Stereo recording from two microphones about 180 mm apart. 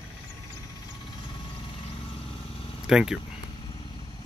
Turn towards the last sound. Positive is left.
turn(degrees=-5)  # may be behind; listen again after turning